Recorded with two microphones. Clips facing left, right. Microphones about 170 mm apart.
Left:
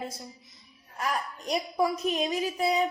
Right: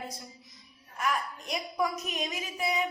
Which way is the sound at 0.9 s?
35° left (ahead or behind).